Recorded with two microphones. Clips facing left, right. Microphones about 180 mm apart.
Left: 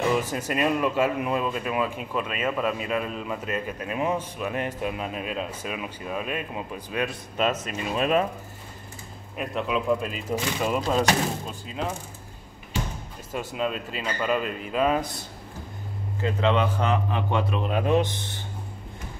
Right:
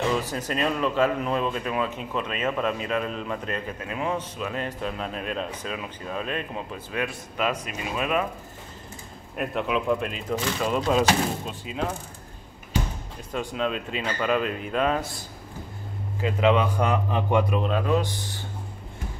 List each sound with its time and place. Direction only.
0.5 s speech: 10° left (ahead or behind)
3.8 s speech: 20° left (ahead or behind)
6.9 s speech: 25° left (ahead or behind)
9.4 s speech: centre (ahead or behind)
13.3 s speech: 5° left (ahead or behind)
16.2 s speech: 10° right (ahead or behind)
17.7 s speech: 20° left (ahead or behind)